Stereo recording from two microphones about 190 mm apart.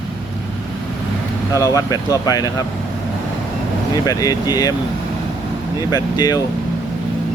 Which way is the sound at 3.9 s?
20° left (ahead or behind).